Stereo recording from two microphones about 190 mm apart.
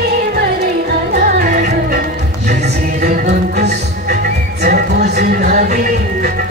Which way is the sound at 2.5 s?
55° right (ahead or behind).